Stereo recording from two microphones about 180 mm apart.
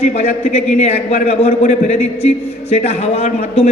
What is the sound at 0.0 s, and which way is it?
A man's voice, 40° left (ahead or behind).